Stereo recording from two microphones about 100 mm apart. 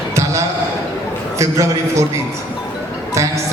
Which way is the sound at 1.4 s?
30° right (ahead or behind).